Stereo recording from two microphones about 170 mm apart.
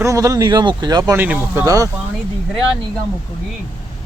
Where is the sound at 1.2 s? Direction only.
10° right (ahead or behind).